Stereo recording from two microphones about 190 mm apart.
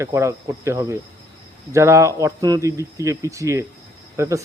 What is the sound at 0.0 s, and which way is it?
Speech, 15° right (ahead or behind).